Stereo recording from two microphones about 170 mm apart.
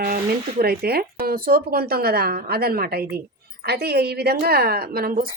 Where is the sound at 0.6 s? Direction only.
65° right (ahead or behind).